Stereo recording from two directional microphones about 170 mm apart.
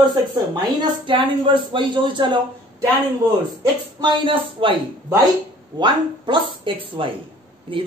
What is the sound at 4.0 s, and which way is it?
Speech, 30° right (ahead or behind).